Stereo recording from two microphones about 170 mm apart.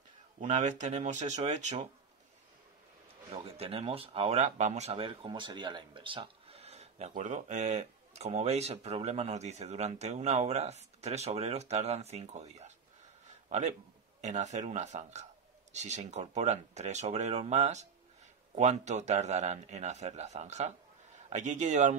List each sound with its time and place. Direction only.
0.4 s speech: 45° right (ahead or behind)
3.3 s a man's voice: 35° right (ahead or behind)